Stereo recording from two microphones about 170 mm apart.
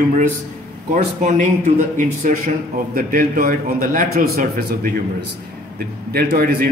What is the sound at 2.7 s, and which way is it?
A man's voice, 55° right (ahead or behind).